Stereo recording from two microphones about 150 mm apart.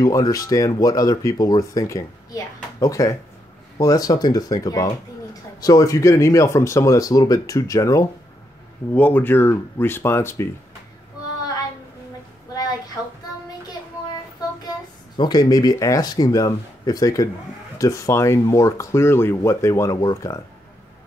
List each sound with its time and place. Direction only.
0.0 s speech: 25° left (ahead or behind)
15.1 s speech: 30° left (ahead or behind)